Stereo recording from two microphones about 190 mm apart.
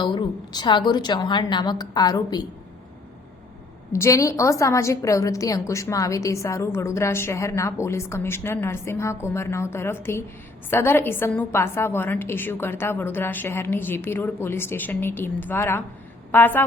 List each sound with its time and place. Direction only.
0.0 s a woman's voice: 25° left (ahead or behind)
3.9 s a woman's voice: 15° left (ahead or behind)